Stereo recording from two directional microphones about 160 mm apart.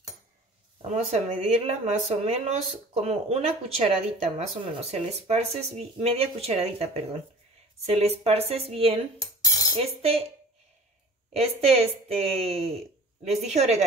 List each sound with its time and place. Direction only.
0.8 s speech: 45° right (ahead or behind)
9.2 s cutlery: 25° left (ahead or behind)
9.8 s speech: 40° right (ahead or behind)
11.3 s speech: 40° right (ahead or behind)